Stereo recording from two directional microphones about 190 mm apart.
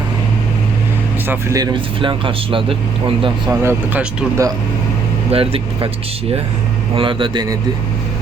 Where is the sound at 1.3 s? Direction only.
15° right (ahead or behind).